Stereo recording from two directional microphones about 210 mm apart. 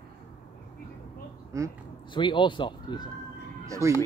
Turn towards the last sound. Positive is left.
turn(degrees=-15)  # may be behind; listen again after turning